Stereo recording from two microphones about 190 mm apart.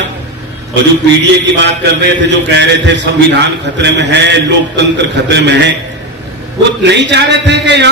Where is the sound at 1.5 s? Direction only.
65° right (ahead or behind).